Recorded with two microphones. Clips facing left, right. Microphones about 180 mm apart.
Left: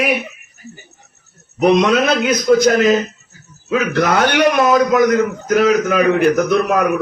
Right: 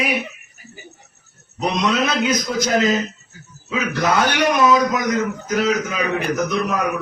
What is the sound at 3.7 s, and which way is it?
Speech, 60° left (ahead or behind).